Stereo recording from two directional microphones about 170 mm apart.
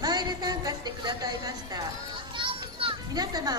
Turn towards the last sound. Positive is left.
turn(degrees=-25)  # may be behind; listen again after turning